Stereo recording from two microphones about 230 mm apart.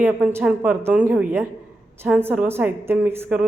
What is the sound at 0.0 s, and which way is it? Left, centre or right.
A woman's voice, centre.